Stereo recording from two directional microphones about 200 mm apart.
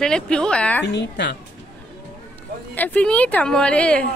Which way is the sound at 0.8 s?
60° left (ahead or behind).